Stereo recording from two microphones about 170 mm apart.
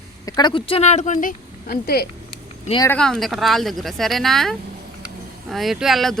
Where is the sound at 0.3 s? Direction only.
25° left (ahead or behind); by 2.0 s 65° left (ahead or behind).